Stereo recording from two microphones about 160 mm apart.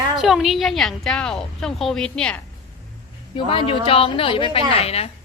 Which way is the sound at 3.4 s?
35° left (ahead or behind).